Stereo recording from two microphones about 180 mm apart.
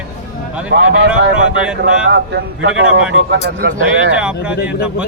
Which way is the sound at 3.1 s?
70° right (ahead or behind).